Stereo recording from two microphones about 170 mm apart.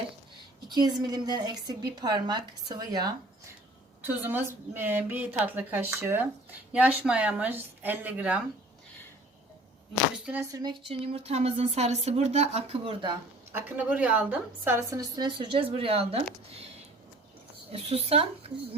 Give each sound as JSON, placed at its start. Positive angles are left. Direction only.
{"t": 0.7, "sound": "a woman's voice", "side_deg": -25}
{"t": 4.0, "sound": "a woman's voice", "side_deg": -10}
{"t": 10.2, "sound": "a woman's voice", "side_deg": -10}
{"t": 10.5, "sound": "speech", "side_deg": -25}
{"t": 13.5, "sound": "a woman's voice", "side_deg": -10}
{"t": 14.9, "sound": "speech", "side_deg": -25}
{"t": 17.7, "sound": "speech", "side_deg": -35}